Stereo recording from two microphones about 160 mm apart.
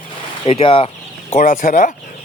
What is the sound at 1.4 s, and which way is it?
Speech, 55° left (ahead or behind).